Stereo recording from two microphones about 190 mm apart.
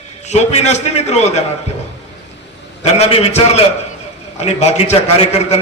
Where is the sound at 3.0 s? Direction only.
35° left (ahead or behind).